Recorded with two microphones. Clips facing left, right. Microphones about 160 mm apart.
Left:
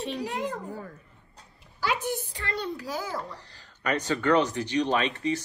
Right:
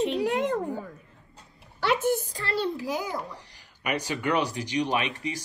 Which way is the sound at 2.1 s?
35° right (ahead or behind).